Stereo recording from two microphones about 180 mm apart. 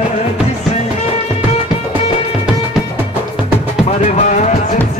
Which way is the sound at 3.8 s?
40° left (ahead or behind).